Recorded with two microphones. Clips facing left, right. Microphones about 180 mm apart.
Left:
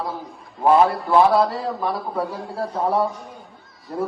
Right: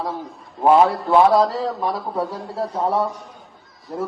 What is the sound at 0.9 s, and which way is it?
A man's voice, centre (ahead or behind).